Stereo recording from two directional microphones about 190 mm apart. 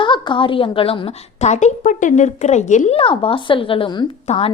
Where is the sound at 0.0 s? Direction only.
25° left (ahead or behind).